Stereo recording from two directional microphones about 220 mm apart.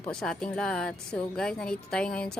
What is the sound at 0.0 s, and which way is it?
Speech, 5° left (ahead or behind).